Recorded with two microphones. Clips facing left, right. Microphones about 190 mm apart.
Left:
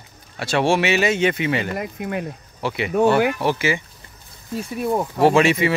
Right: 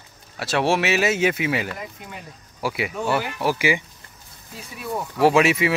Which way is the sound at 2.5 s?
5° right (ahead or behind).